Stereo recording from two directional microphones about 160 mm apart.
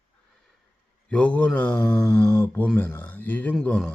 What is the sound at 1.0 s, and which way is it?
Speech, 5° left (ahead or behind).